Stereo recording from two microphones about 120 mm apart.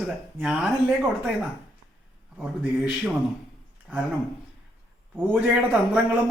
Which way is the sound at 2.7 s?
5° right (ahead or behind).